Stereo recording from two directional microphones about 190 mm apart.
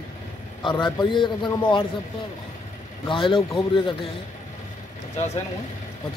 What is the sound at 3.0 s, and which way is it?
Speech, 25° left (ahead or behind).